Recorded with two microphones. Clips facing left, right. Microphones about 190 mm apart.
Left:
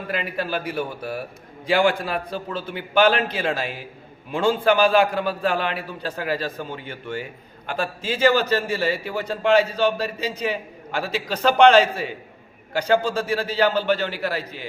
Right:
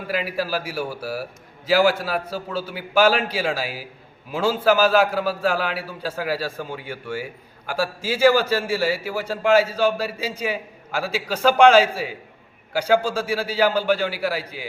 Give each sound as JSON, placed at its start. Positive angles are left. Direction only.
{"t": 0.1, "sound": "a man's voice", "side_deg": -5}